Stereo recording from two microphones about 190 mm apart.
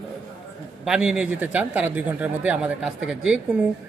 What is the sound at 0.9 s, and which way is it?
Speech, 5° right (ahead or behind).